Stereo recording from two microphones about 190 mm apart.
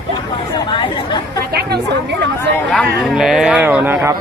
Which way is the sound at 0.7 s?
25° left (ahead or behind).